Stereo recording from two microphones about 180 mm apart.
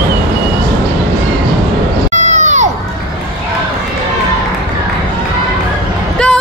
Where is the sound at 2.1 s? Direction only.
40° right (ahead or behind).